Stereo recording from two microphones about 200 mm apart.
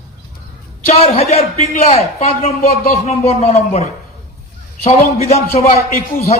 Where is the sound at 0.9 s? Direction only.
30° left (ahead or behind).